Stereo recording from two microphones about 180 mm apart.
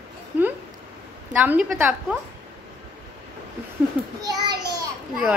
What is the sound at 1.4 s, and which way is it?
Speech, 10° right (ahead or behind).